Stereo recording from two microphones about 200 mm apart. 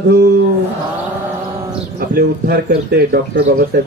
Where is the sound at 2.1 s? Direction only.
50° right (ahead or behind).